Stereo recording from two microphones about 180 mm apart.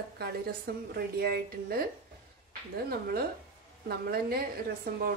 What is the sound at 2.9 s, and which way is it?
A woman's voice, 55° right (ahead or behind).